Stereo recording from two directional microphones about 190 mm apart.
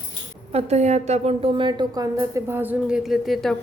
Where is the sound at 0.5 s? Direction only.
35° right (ahead or behind).